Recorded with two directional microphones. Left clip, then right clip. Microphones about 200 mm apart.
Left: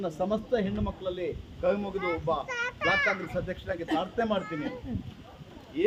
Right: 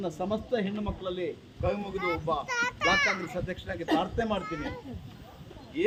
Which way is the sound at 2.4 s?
35° right (ahead or behind).